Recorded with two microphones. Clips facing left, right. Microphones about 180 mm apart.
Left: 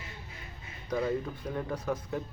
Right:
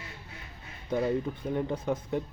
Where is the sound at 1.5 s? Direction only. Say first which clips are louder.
Right 3 dB; 20° right (ahead or behind).